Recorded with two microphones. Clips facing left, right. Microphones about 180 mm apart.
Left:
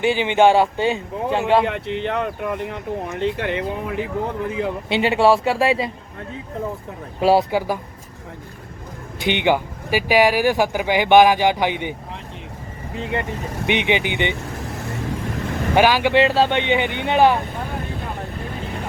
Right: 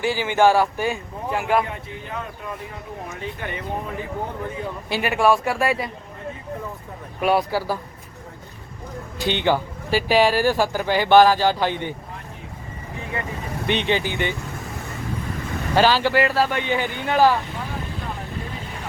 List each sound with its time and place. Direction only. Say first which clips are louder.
0.0 s a man's voice: left 3 dB; 20° left (ahead or behind)
1.6 s speech: left 11 dB; 75° left (ahead or behind)
4.9 s a man's voice: left 3 dB; 25° left (ahead or behind)
7.2 s a man's voice: left 4 dB; 30° left (ahead or behind)
9.2 s speech: left 2 dB; 15° left (ahead or behind)
13.7 s speech: left 2 dB; 15° left (ahead or behind)
15.7 s speech: left 2 dB; 15° left (ahead or behind)
16.1 s a man's voice: left 4 dB; 25° left (ahead or behind)